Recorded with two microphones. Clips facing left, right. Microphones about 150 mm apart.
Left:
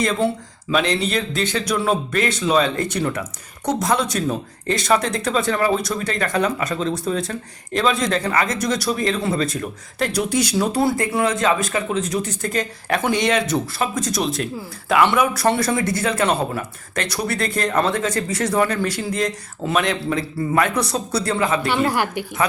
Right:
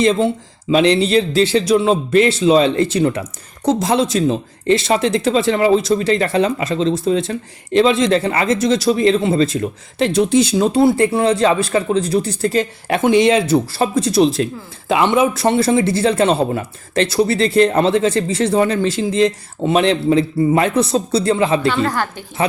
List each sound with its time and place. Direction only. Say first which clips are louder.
0.0 s speech: right 5 dB; 25° right (ahead or behind)
21.7 s a woman's voice: right 1 dB; 15° left (ahead or behind)